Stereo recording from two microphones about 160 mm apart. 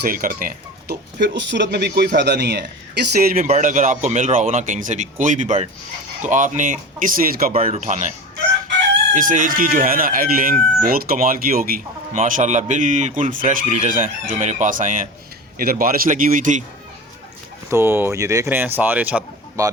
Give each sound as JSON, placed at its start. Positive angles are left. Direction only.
{"t": 0.0, "sound": "a man's voice", "side_deg": -60}
{"t": 3.3, "sound": "speech", "side_deg": -50}
{"t": 7.7, "sound": "speech", "side_deg": -50}
{"t": 9.1, "sound": "speech", "side_deg": -55}
{"t": 12.1, "sound": "speech", "side_deg": -45}
{"t": 17.7, "sound": "speech", "side_deg": -15}
{"t": 19.6, "sound": "speech", "side_deg": -20}